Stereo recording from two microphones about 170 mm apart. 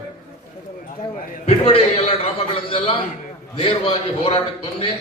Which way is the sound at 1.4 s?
35° left (ahead or behind).